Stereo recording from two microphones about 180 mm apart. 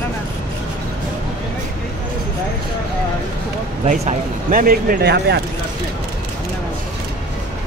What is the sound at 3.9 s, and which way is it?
Speech, 45° right (ahead or behind).